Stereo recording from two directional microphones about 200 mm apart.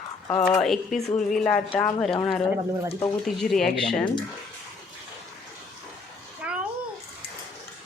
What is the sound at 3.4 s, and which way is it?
Speech, centre (ahead or behind).